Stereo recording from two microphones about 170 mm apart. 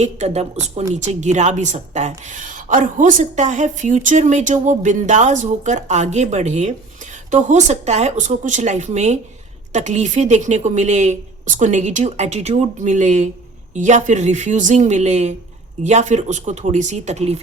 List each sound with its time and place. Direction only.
0.0 s a woman's voice: 40° right (ahead or behind)